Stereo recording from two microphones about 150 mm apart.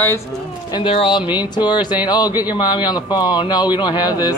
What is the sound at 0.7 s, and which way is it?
Speech, 35° left (ahead or behind).